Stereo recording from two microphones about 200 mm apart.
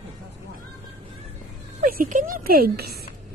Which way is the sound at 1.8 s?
45° right (ahead or behind).